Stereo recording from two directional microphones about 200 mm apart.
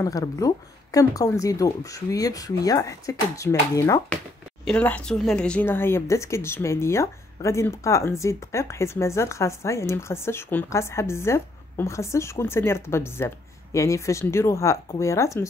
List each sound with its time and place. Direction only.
0.0 s speech: 15° left (ahead or behind)